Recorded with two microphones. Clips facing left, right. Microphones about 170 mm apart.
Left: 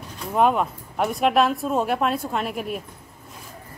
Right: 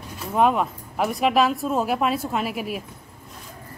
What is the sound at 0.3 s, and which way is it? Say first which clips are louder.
Speech: even; centre (ahead or behind).